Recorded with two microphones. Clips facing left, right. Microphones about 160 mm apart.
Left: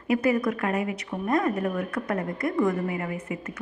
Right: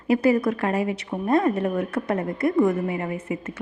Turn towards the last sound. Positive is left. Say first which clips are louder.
# right 3 dB
turn(degrees=-25)  # may be behind; listen again after turning